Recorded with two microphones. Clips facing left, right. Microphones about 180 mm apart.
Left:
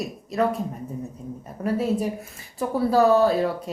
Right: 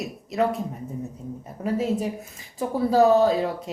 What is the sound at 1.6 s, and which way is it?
A woman's voice, 20° right (ahead or behind).